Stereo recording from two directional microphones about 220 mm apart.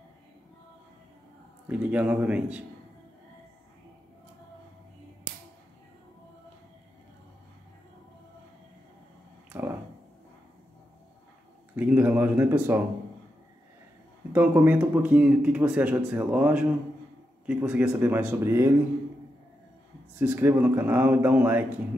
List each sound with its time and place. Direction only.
1.7 s speech: 5° right (ahead or behind)
9.5 s a sound: 10° right (ahead or behind)
11.7 s speech: 10° right (ahead or behind)
14.3 s speech: 10° right (ahead or behind)
20.2 s speech: 10° right (ahead or behind)